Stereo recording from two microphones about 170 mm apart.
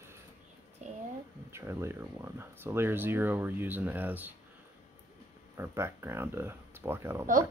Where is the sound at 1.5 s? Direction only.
15° right (ahead or behind).